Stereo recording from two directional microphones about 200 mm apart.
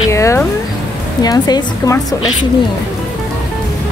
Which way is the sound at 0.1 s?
15° left (ahead or behind).